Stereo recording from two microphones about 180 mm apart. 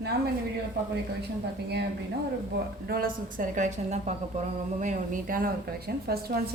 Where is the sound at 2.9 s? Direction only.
55° right (ahead or behind).